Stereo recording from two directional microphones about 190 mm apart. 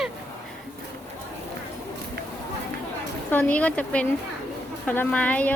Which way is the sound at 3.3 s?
10° left (ahead or behind).